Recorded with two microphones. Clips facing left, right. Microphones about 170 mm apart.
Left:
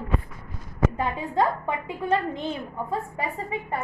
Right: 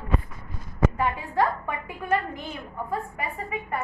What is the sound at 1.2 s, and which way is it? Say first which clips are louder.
A woman's voice: left 1 dB; 20° left (ahead or behind).